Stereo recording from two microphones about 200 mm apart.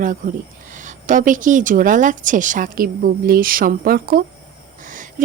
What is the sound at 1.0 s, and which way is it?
Speech, 40° right (ahead or behind).